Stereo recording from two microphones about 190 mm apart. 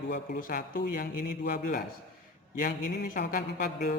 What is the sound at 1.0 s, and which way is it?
Music, 45° left (ahead or behind).